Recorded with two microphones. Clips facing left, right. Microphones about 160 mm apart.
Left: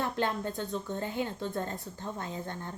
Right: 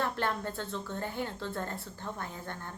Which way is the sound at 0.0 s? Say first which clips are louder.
Left 1 dB; 15° left (ahead or behind).